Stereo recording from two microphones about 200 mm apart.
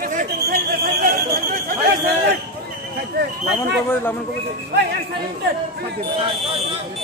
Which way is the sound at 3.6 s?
10° left (ahead or behind).